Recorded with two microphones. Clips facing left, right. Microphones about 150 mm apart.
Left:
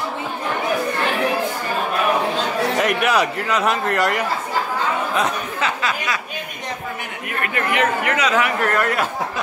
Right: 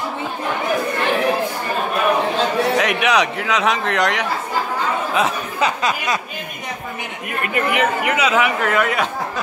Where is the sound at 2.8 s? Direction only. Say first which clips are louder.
Even; centre (ahead or behind).